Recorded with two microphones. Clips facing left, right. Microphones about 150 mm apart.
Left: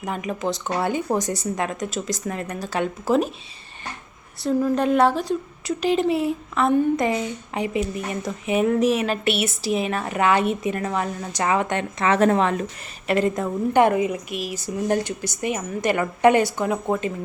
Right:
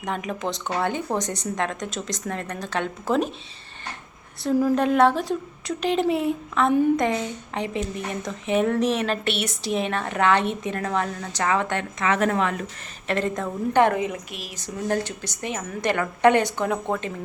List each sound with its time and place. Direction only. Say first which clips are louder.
0.0 s a woman's voice: left 2 dB; 5° left (ahead or behind)
4.4 s a woman's voice: even; centre (ahead or behind); by 11.9 s 15° left (ahead or behind)
11.9 s a woman's voice: left 4 dB; 30° left (ahead or behind)
13.1 s a woman's voice: left 4 dB; 10° left (ahead or behind)